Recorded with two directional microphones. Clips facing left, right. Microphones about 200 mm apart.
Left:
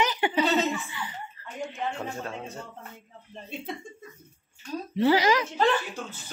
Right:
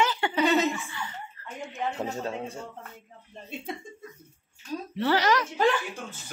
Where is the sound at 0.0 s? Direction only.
20° left (ahead or behind).